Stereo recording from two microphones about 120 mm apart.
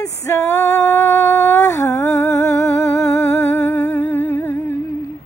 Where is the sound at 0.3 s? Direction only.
20° left (ahead or behind).